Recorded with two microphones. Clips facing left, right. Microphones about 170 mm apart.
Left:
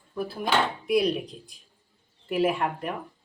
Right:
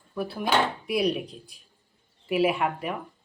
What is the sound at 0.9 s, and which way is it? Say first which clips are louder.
Speech: left 2 dB; centre (ahead or behind).